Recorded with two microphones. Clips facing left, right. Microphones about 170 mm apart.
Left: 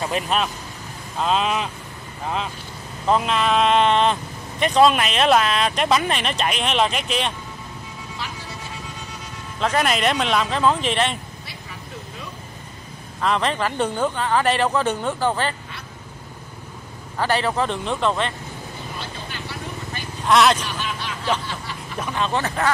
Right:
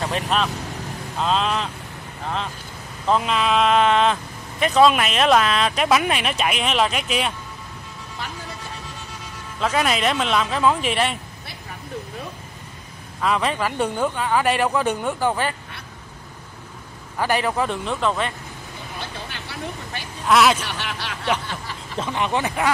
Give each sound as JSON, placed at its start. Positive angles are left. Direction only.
{"t": 0.1, "sound": "speech", "side_deg": 5}
{"t": 3.1, "sound": "speech", "side_deg": 0}
{"t": 9.6, "sound": "speech", "side_deg": 0}
{"t": 13.2, "sound": "speech", "side_deg": -5}
{"t": 17.2, "sound": "speech", "side_deg": -10}
{"t": 20.2, "sound": "speech", "side_deg": -5}
{"t": 20.6, "sound": "a sound", "side_deg": -75}
{"t": 21.9, "sound": "speech", "side_deg": -20}